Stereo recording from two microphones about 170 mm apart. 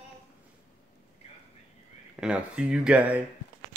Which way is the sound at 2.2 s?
5° right (ahead or behind).